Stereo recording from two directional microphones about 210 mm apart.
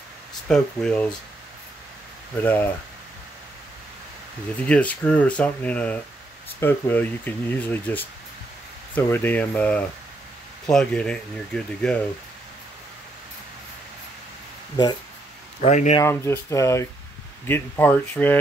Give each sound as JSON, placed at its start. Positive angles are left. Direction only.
{"t": 0.5, "sound": "speech", "side_deg": 5}
{"t": 2.4, "sound": "speech", "side_deg": 10}
{"t": 4.6, "sound": "speech", "side_deg": 5}
{"t": 15.6, "sound": "speech", "side_deg": 35}
{"t": 16.0, "sound": "speech", "side_deg": 15}